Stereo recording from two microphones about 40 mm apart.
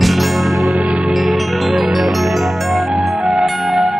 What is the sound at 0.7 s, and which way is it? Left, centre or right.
Music, right.